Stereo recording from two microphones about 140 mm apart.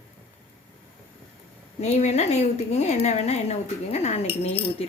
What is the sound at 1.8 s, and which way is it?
A woman's voice, 55° left (ahead or behind).